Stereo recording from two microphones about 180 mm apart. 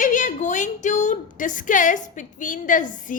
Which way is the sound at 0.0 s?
45° left (ahead or behind).